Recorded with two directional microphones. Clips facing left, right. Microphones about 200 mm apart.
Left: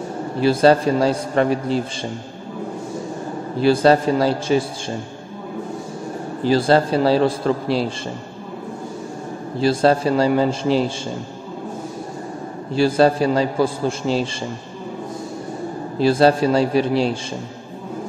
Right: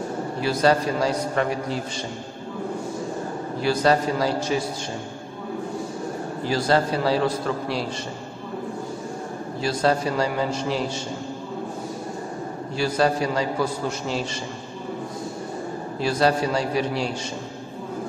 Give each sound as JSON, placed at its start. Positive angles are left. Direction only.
{"t": 0.4, "sound": "a man's voice", "side_deg": 30}
{"t": 3.6, "sound": "a man's voice", "side_deg": 30}
{"t": 6.4, "sound": "a man's voice", "side_deg": 30}
{"t": 9.6, "sound": "a man's voice", "side_deg": 30}
{"t": 12.7, "sound": "a man's voice", "side_deg": 30}
{"t": 16.0, "sound": "a man's voice", "side_deg": 30}